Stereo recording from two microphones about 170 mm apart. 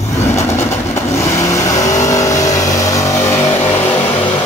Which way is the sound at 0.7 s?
15° left (ahead or behind).